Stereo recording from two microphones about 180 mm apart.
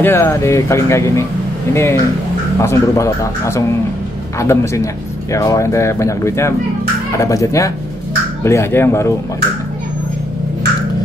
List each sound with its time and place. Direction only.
0.0 s speech: 15° left (ahead or behind)